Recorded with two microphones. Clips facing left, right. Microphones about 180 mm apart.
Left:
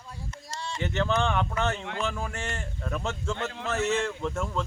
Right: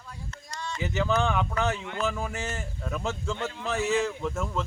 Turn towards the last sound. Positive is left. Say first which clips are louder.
# even
turn(degrees=0)  # may be behind; listen again after turning